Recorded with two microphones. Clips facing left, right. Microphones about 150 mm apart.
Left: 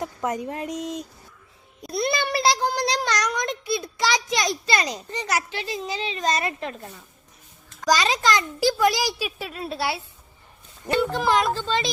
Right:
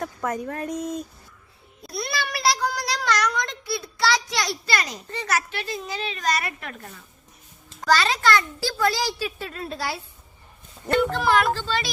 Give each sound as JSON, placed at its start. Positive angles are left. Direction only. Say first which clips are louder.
{"t": 0.0, "sound": "a child's voice", "louder": "left 1 dB", "side_deg": 20}
{"t": 10.8, "sound": "speech", "louder": "right 1 dB", "side_deg": 15}